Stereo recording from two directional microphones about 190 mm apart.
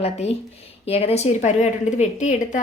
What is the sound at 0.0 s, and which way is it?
A woman's voice, 35° left (ahead or behind).